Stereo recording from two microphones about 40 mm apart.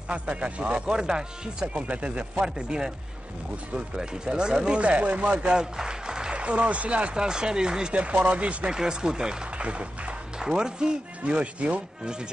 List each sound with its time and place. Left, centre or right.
0.1 s a man's voice: right
0.8 s speech: centre
2.4 s speech: centre
4.7 s speech: right
6.3 s speech: right
7.2 s a man's voice: centre
8.7 s speech: centre
9.6 s speech: right
10.4 s speech: centre
11.2 s a man's voice: right